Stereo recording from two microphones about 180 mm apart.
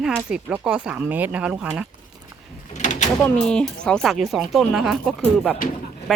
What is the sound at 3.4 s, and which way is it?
Speech, 5° left (ahead or behind).